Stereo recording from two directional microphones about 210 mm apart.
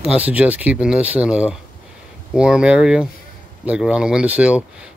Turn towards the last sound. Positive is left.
turn(degrees=-5)  # may be behind; listen again after turning